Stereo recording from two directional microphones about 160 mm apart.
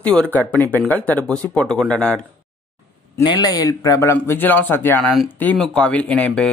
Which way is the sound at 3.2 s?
25° left (ahead or behind).